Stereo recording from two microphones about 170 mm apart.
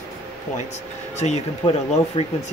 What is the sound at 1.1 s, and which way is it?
Speech, 40° left (ahead or behind).